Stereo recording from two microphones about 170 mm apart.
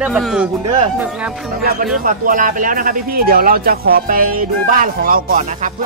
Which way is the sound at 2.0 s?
50° right (ahead or behind).